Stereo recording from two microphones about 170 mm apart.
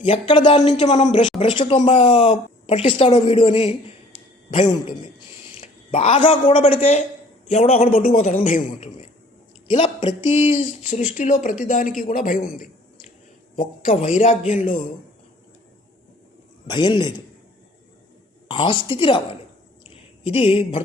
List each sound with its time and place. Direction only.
0.0 s a woman's voice: 30° left (ahead or behind)
0.9 s a man's voice: 45° left (ahead or behind)
9.8 s speech: 25° left (ahead or behind); by 14.7 s 45° left (ahead or behind)
16.6 s a man's voice: 30° left (ahead or behind)
18.4 s a woman's voice: 30° left (ahead or behind)
19.8 s a sound: 35° left (ahead or behind)